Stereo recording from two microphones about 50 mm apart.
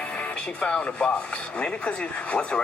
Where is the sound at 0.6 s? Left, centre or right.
Left.